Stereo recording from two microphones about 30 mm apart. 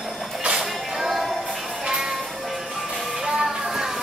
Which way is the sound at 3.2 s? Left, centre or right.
Centre.